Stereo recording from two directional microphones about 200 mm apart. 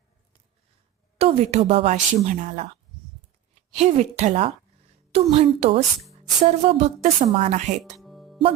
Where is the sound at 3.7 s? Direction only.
35° right (ahead or behind).